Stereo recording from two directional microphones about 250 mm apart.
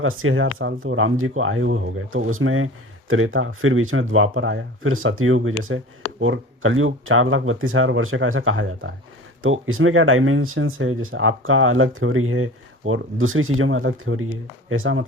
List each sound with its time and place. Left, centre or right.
0.0 s speech: right